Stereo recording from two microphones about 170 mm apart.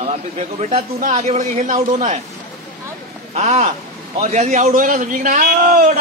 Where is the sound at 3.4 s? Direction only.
40° right (ahead or behind).